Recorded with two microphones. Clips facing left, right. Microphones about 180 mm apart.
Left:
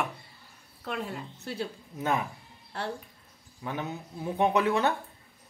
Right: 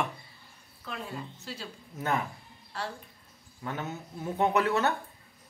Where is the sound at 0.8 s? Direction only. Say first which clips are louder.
Left 4 dB; 60° left (ahead or behind).